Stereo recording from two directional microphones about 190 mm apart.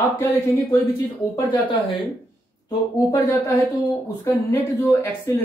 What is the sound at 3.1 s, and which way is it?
A woman's voice, 20° left (ahead or behind).